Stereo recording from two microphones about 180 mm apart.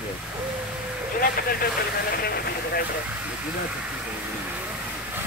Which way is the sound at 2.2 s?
60° left (ahead or behind).